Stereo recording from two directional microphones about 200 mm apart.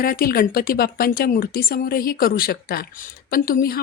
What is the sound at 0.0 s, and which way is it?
Speech, 50° left (ahead or behind).